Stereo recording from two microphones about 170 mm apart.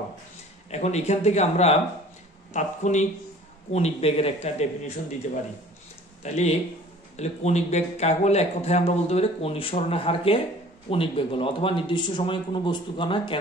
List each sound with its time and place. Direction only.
0.7 s a man's voice: 40° left (ahead or behind)
5.2 s a man's voice: 50° left (ahead or behind); by 13.4 s 30° left (ahead or behind)